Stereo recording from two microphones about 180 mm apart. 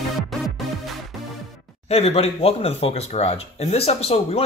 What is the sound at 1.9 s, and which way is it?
Speech, 35° left (ahead or behind).